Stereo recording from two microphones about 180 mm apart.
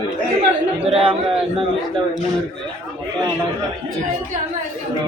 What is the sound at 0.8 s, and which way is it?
Speech, 30° right (ahead or behind).